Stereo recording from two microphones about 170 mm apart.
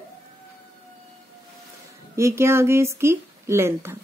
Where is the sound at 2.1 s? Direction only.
15° right (ahead or behind).